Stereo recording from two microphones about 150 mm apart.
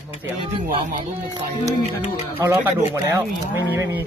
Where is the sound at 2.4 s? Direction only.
20° right (ahead or behind).